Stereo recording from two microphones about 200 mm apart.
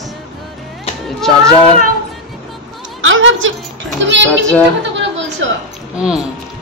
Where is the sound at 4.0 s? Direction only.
65° right (ahead or behind).